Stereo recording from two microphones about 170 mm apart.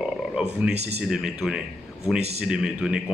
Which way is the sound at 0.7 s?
40° right (ahead or behind).